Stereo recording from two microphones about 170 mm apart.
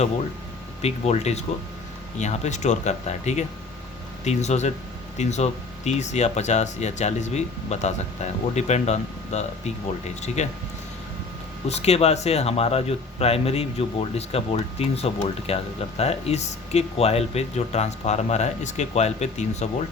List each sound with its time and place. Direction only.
0.8 s speech: 40° left (ahead or behind)
11.7 s speech: 40° left (ahead or behind)